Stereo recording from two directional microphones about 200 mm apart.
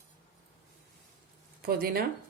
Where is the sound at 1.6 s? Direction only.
50° right (ahead or behind).